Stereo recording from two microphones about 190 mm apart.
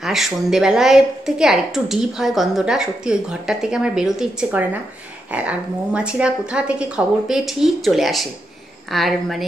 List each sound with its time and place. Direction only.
0.0 s a woman's voice: centre (ahead or behind)